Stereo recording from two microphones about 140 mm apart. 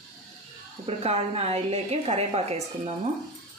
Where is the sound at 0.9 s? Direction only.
45° right (ahead or behind).